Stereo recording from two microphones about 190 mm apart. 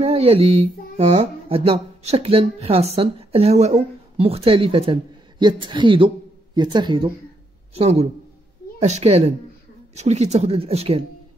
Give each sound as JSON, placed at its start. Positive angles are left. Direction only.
{"t": 0.0, "sound": "a woman's voice", "side_deg": -30}